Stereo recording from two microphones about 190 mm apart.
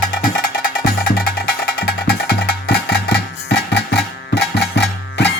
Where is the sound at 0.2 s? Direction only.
45° left (ahead or behind).